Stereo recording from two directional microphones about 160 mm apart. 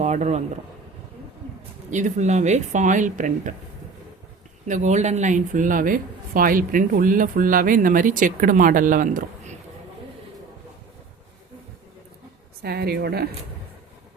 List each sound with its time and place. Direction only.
0.0 s speech: 45° right (ahead or behind)
1.9 s speech: 50° right (ahead or behind)
4.7 s speech: 50° right (ahead or behind)
12.6 s a woman's voice: 75° right (ahead or behind)